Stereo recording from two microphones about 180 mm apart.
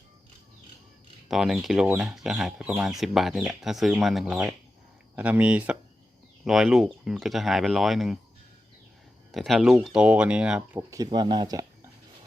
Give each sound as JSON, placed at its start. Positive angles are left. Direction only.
{"t": 1.3, "sound": "speech", "side_deg": 0}
{"t": 9.3, "sound": "speech", "side_deg": 0}
{"t": 10.9, "sound": "speech", "side_deg": -20}